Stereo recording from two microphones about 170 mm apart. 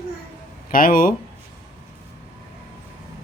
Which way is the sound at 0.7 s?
55° left (ahead or behind).